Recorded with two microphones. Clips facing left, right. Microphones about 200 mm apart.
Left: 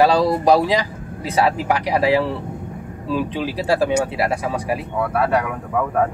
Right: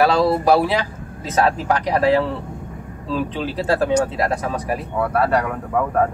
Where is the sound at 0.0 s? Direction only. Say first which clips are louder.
Left 1 dB; 15° left (ahead or behind).